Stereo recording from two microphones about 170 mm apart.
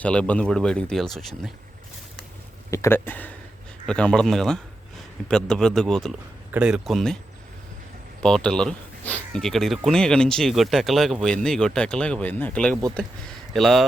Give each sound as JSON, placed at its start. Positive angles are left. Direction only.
{"t": 0.0, "sound": "speech", "side_deg": 5}
{"t": 2.6, "sound": "speech", "side_deg": 15}
{"t": 8.2, "sound": "speech", "side_deg": 5}